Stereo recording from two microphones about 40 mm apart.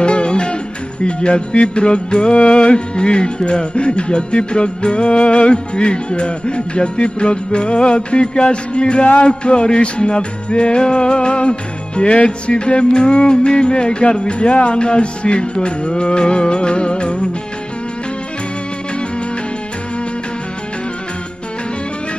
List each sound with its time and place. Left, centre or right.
0.0 s music: left